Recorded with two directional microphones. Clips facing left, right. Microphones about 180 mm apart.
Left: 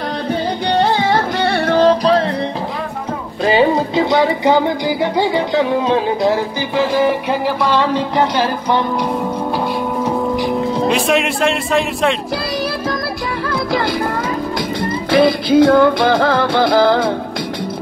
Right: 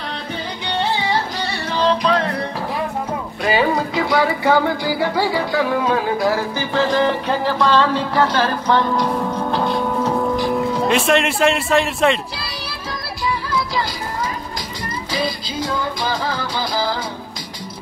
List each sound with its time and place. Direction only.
0.7 s music: 45° left (ahead or behind)
3.4 s speech: 25° left (ahead or behind)
10.0 s a sound: 15° left (ahead or behind)
10.9 s a man's voice: centre (ahead or behind)
13.5 s music: 60° left (ahead or behind)